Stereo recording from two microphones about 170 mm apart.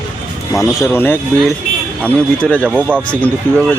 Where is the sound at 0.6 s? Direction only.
15° left (ahead or behind).